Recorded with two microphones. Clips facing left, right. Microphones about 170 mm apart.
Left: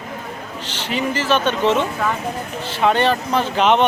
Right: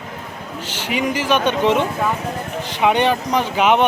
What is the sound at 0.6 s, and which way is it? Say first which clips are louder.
Speech: right 1 dB; 10° right (ahead or behind).